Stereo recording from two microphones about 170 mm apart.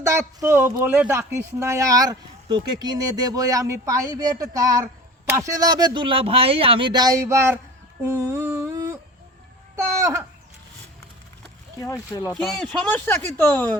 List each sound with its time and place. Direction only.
0.0 s speech: 15° right (ahead or behind)
8.2 s humming: 15° right (ahead or behind)
9.7 s a sound: 15° right (ahead or behind)
11.8 s speech: 20° left (ahead or behind)
12.5 s speech: centre (ahead or behind)